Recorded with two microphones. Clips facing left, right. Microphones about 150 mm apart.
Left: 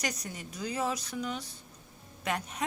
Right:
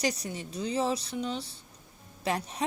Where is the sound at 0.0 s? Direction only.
30° right (ahead or behind).